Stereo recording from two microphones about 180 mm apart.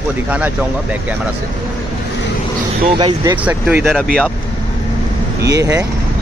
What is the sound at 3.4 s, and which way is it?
Speech, 10° right (ahead or behind).